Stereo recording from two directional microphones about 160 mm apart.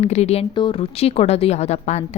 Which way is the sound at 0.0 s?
45° left (ahead or behind).